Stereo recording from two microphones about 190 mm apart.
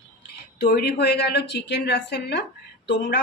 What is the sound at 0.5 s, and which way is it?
A woman's voice, 55° left (ahead or behind).